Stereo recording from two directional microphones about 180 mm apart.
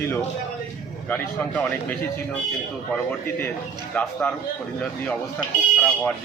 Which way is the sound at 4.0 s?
10° left (ahead or behind).